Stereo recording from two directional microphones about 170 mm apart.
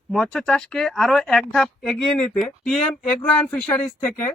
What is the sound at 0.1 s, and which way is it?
A man's voice, 5° left (ahead or behind).